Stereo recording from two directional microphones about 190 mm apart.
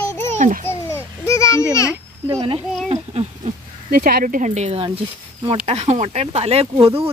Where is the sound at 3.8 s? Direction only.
50° right (ahead or behind).